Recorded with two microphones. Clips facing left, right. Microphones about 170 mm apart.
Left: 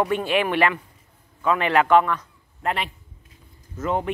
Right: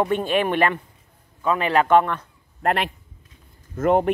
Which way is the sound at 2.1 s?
55° right (ahead or behind).